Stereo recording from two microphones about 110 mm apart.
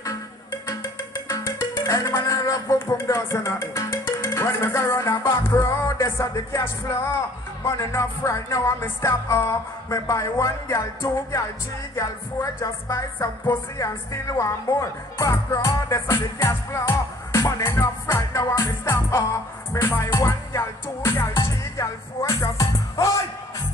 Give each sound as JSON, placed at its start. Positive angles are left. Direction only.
{"t": 0.0, "sound": "music", "side_deg": 35}
{"t": 11.9, "sound": "music", "side_deg": 25}
{"t": 13.7, "sound": "speech", "side_deg": 30}
{"t": 19.7, "sound": "music", "side_deg": 25}